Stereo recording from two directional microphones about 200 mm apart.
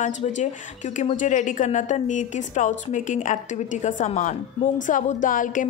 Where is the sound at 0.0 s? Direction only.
40° left (ahead or behind).